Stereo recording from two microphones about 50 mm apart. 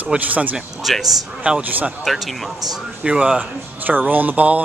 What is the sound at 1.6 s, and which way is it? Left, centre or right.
Speech, right.